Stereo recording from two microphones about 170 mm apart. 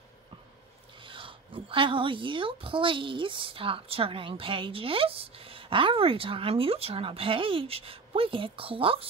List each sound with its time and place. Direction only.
1.0 s a woman's voice: 30° right (ahead or behind)